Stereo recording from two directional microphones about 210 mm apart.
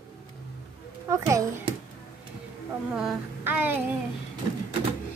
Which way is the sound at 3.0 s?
5° right (ahead or behind).